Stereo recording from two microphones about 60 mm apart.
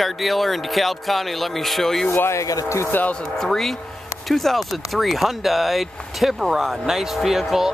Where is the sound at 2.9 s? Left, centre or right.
Left.